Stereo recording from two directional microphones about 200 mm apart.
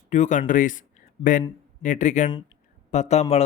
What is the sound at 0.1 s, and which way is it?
Speech, 35° left (ahead or behind).